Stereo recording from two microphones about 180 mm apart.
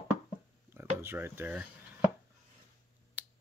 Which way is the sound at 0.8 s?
10° right (ahead or behind).